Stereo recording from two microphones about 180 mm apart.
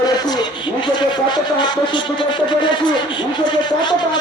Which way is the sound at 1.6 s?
25° left (ahead or behind).